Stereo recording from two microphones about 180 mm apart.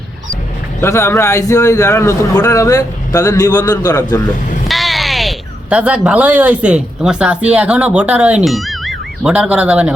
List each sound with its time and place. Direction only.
0.8 s a man's voice: 15° left (ahead or behind)
4.7 s a sound: centre (ahead or behind)
7.5 s speech: 5° right (ahead or behind)